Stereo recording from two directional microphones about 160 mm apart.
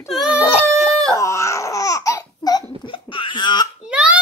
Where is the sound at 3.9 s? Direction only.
5° right (ahead or behind).